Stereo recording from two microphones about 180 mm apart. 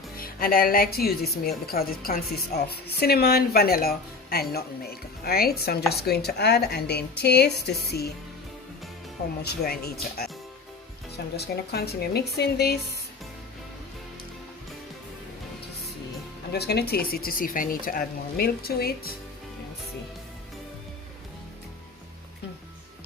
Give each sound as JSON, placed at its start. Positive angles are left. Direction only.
{"t": 0.2, "sound": "speech", "side_deg": 55}
{"t": 9.4, "sound": "speech", "side_deg": 60}
{"t": 11.3, "sound": "speech", "side_deg": 60}
{"t": 16.5, "sound": "speech", "side_deg": 65}